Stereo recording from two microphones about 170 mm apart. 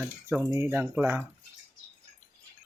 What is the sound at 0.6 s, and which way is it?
Speech, 10° right (ahead or behind).